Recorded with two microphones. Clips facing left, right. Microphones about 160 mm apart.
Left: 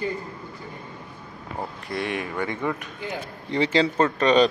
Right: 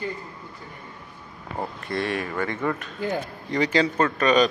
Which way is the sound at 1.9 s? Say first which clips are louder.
Right 1 dB; 15° left (ahead or behind).